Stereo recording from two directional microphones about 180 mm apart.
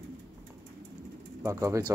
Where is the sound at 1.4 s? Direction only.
15° right (ahead or behind).